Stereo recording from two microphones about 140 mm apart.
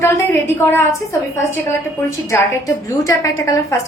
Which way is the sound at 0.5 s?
20° left (ahead or behind).